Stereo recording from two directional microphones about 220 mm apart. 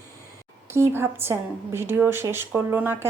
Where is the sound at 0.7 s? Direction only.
10° right (ahead or behind).